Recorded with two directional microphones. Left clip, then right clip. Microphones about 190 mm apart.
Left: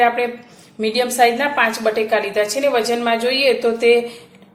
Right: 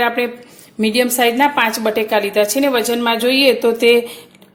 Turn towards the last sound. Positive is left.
turn(degrees=-40)  # may be behind; listen again after turning